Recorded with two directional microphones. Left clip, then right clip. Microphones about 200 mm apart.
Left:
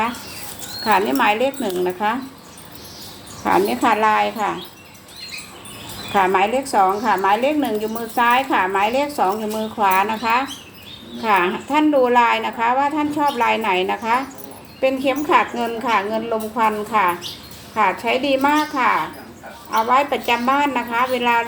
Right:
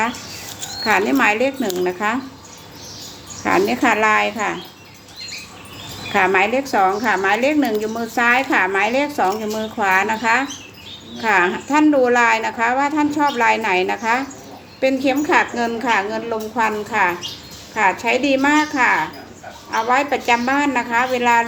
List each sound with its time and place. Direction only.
0.9 s a woman's voice: 25° right (ahead or behind)
3.4 s a woman's voice: 20° right (ahead or behind)
6.1 s a woman's voice: 20° right (ahead or behind)